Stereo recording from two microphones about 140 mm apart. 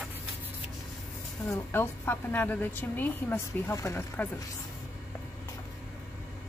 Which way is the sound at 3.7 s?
25° left (ahead or behind).